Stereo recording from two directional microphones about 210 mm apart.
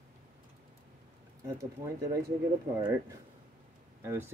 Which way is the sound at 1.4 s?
15° right (ahead or behind).